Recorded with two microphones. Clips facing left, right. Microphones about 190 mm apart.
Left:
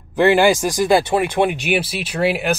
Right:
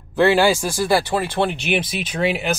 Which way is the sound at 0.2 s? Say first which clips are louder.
Left 2 dB; 15° left (ahead or behind).